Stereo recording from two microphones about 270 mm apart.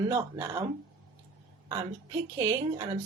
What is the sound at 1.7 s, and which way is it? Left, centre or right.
Speech, centre.